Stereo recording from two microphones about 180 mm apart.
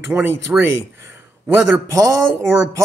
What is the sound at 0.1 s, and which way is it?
Speech, 15° right (ahead or behind).